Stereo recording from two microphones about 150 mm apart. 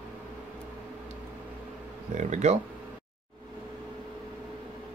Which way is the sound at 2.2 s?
50° right (ahead or behind).